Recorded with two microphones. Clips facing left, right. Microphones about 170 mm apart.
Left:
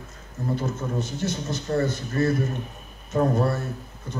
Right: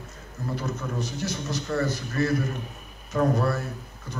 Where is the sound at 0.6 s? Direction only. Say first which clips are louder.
Left 2 dB; 25° left (ahead or behind).